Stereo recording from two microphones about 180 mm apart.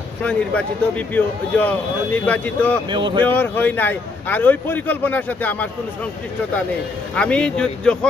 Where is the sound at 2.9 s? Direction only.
25° right (ahead or behind).